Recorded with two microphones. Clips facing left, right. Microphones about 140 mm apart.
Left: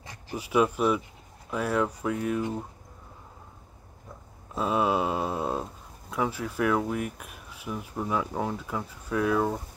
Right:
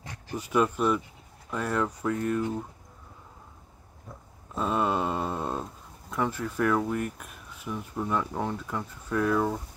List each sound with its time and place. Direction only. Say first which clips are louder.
0.3 s speech: left 1 dB; 5° left (ahead or behind)
4.6 s speech: left 1 dB; 5° left (ahead or behind)